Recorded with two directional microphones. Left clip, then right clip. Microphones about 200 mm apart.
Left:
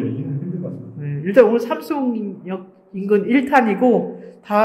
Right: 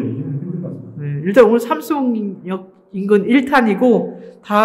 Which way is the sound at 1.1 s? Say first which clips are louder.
Right 2 dB; 25° right (ahead or behind).